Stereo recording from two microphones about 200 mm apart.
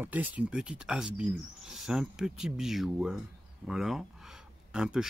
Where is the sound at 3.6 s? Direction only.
Centre (ahead or behind).